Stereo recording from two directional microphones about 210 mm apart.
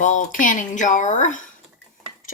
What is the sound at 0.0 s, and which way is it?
Speech, 35° left (ahead or behind).